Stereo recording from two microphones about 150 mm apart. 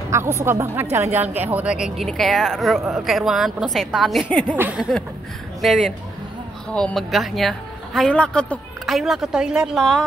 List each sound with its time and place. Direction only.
0.1 s a woman's voice: 15° right (ahead or behind); by 4.6 s 10° left (ahead or behind)
4.6 s speech: 5° right (ahead or behind)